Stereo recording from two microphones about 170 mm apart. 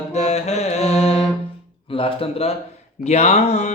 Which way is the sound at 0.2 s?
40° left (ahead or behind).